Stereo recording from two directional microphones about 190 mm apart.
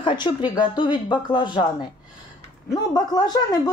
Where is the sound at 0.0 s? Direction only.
25° left (ahead or behind).